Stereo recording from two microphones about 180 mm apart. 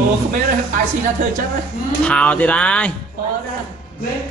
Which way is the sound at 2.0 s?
5° left (ahead or behind).